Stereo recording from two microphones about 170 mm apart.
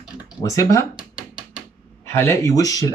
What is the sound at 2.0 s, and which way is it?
Speech, 15° left (ahead or behind).